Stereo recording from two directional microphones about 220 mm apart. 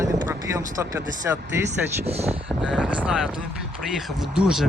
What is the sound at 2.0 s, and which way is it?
Speech, 30° right (ahead or behind).